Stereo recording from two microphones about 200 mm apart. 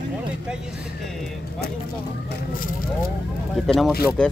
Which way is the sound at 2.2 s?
45° left (ahead or behind).